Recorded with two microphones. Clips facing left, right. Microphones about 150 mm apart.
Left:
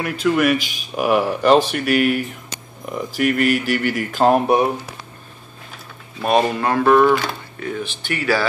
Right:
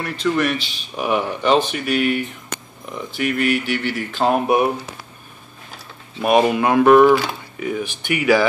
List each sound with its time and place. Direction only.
0.0 s speech: 5° left (ahead or behind)
3.6 s speech: 40° left (ahead or behind)
4.3 s speech: 5° right (ahead or behind)
6.2 s speech: 10° right (ahead or behind)